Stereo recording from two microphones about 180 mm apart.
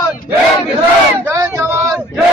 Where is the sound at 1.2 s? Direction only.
15° right (ahead or behind).